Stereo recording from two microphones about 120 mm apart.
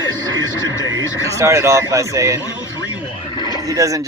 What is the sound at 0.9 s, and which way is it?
A man's voice, 25° right (ahead or behind).